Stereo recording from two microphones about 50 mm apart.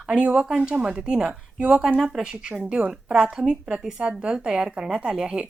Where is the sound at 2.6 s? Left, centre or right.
Right.